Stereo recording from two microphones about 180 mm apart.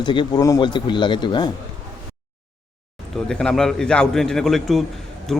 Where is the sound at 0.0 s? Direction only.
25° left (ahead or behind).